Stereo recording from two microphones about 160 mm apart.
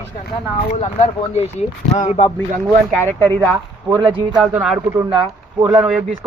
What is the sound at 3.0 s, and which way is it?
Speech, 15° left (ahead or behind).